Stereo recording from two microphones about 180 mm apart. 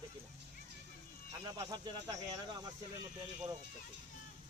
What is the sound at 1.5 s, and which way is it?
Speech, 20° right (ahead or behind).